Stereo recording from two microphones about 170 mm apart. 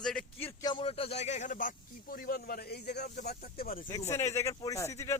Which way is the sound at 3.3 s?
60° left (ahead or behind).